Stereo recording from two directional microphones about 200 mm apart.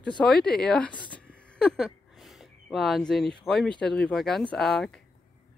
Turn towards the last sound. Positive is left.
turn(degrees=0)  # may be behind; listen again after turning